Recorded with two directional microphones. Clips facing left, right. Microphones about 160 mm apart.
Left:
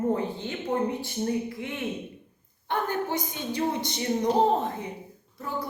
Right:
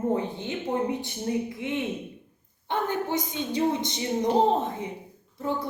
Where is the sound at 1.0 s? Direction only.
20° right (ahead or behind).